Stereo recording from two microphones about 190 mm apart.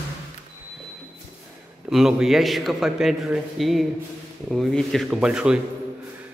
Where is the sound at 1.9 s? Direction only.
Centre (ahead or behind).